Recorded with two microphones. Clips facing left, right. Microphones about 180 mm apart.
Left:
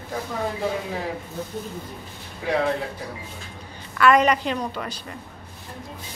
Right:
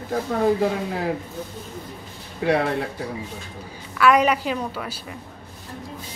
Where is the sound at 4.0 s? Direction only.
5° right (ahead or behind).